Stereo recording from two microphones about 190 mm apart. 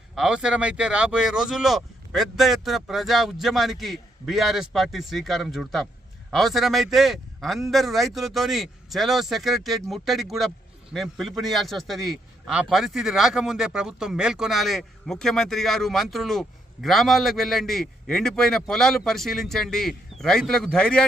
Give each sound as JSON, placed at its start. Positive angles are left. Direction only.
{"t": 0.2, "sound": "a man's voice", "side_deg": -5}